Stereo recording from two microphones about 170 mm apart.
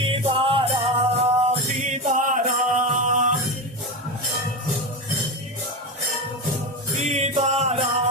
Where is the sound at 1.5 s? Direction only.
45° right (ahead or behind).